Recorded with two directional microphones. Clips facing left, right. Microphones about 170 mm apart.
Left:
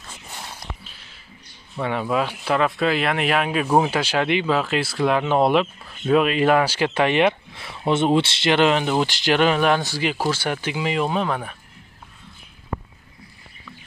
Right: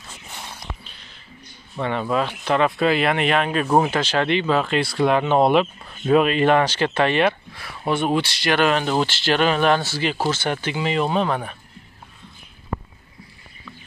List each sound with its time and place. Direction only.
1.8 s speech: 5° left (ahead or behind)